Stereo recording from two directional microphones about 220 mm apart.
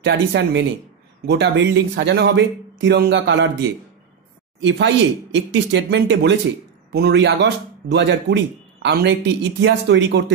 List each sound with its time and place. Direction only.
0.0 s a man's voice: 50° right (ahead or behind)
4.6 s a man's voice: 55° right (ahead or behind)